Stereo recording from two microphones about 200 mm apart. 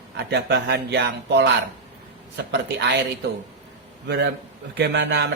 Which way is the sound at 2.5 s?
60° right (ahead or behind).